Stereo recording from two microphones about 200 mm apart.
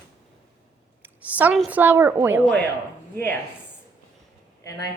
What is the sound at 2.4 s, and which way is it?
Speech, 5° left (ahead or behind).